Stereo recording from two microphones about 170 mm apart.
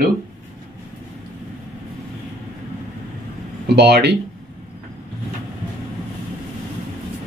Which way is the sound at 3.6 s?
75° right (ahead or behind).